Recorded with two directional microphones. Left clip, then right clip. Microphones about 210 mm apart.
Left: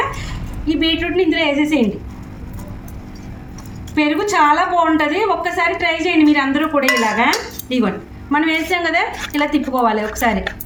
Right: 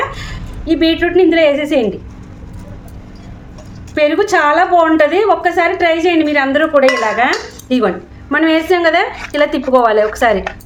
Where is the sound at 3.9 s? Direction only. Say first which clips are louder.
Right 5 dB; 50° right (ahead or behind).